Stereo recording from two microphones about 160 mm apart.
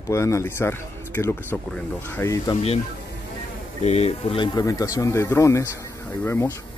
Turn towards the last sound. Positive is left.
turn(degrees=15)  # may be behind; listen again after turning